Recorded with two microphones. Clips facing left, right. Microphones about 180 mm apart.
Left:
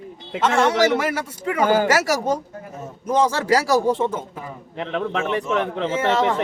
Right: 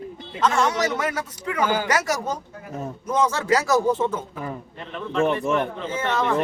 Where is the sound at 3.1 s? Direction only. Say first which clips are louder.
Left 3 dB; 30° left (ahead or behind).